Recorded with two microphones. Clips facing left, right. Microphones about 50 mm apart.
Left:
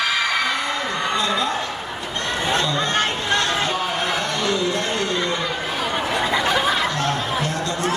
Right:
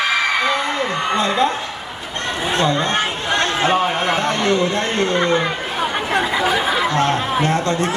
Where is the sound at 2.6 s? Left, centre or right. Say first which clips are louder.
Right 3 dB; right.